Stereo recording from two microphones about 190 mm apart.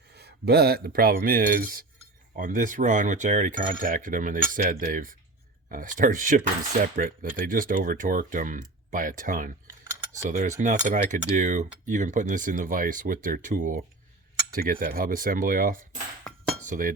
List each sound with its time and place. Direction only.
0.2 s speech: 60° right (ahead or behind)